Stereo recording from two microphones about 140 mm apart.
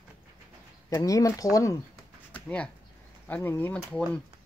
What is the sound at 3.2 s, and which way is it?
Speech, 15° left (ahead or behind).